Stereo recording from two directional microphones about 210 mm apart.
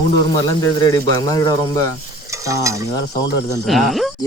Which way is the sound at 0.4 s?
15° left (ahead or behind).